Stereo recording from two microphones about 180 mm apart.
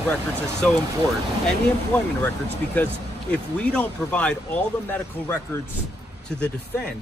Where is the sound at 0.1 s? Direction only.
5° left (ahead or behind).